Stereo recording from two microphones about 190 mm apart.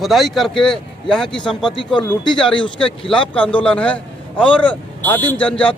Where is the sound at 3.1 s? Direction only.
5° left (ahead or behind).